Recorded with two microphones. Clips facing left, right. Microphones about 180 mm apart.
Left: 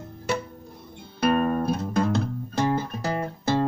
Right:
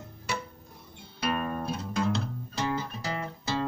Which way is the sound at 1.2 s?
50° left (ahead or behind).